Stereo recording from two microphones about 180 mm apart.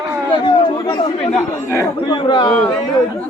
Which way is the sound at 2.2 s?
25° left (ahead or behind).